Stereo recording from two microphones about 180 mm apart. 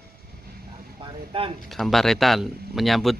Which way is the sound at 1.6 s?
Centre (ahead or behind).